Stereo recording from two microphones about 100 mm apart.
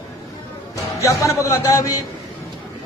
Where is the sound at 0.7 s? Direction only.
30° left (ahead or behind).